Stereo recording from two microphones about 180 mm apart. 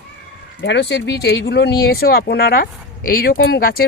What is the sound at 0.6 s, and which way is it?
Speech, 80° left.